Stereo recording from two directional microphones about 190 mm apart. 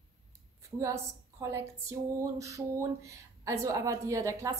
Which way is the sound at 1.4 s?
15° right (ahead or behind).